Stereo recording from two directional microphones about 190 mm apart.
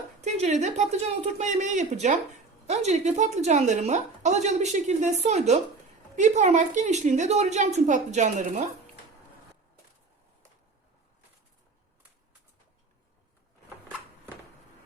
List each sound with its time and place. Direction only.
0.3 s a woman's voice: 35° right (ahead or behind)